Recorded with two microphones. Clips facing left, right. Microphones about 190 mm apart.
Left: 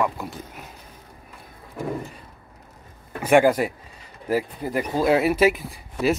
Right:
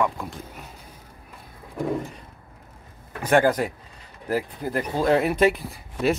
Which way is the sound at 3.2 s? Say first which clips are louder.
Left 3 dB; 10° left (ahead or behind).